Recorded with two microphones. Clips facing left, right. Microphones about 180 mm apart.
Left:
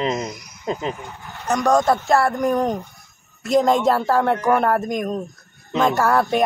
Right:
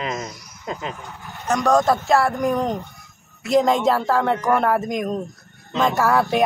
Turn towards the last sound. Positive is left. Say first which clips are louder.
# left 1 dB
turn(degrees=0)  # may be behind; listen again after turning